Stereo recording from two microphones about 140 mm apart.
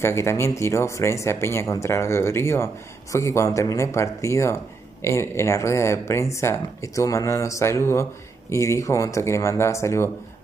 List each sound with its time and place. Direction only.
0.0 s speech: 20° left (ahead or behind)